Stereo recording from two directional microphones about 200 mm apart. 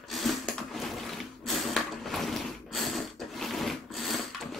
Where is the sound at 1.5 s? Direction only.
Centre (ahead or behind).